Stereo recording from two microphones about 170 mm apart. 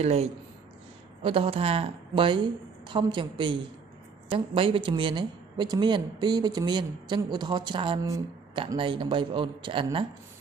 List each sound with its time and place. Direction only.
0.0 s a woman's voice: 40° right (ahead or behind)